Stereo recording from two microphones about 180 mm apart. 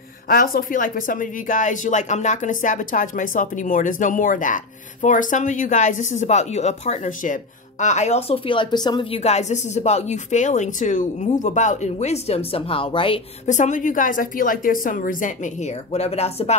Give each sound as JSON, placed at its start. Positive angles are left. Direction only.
{"t": 0.3, "sound": "speech", "side_deg": 50}
{"t": 9.2, "sound": "speech", "side_deg": 40}
{"t": 13.5, "sound": "speech", "side_deg": 45}